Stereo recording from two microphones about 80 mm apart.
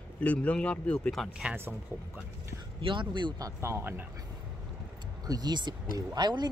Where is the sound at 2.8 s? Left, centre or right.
Right.